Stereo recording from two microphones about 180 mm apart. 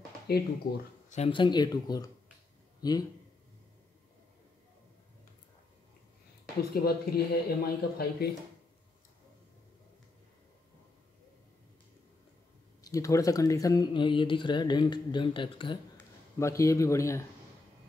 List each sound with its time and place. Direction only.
0.3 s speech: 60° left (ahead or behind)
1.1 s a man's voice: 30° left (ahead or behind)
6.7 s speech: 60° left (ahead or behind)
12.8 s speech: 20° left (ahead or behind)
16.3 s speech: 15° left (ahead or behind)